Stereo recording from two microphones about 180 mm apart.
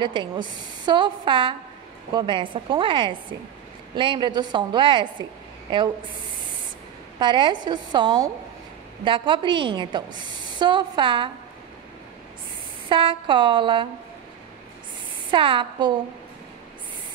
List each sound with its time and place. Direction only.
0.0 s a woman's voice: 25° right (ahead or behind)
7.2 s a woman's voice: 25° right (ahead or behind)
12.8 s a woman's voice: 30° right (ahead or behind)
15.3 s a woman's voice: 30° right (ahead or behind)